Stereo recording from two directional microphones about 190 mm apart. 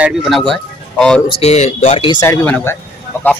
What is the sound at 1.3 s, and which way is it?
Speech, 35° left (ahead or behind).